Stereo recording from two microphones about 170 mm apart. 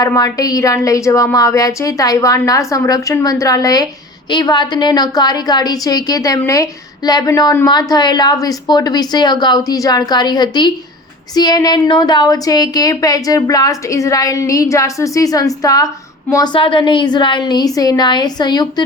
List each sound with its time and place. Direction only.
0.0 s a woman's voice: 20° left (ahead or behind)